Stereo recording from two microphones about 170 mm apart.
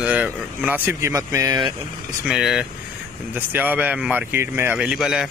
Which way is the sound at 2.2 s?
Centre (ahead or behind).